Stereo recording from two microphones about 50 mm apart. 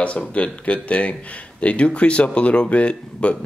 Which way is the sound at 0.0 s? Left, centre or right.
Left.